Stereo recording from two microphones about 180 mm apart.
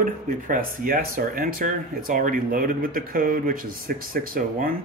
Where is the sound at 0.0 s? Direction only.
50° right (ahead or behind).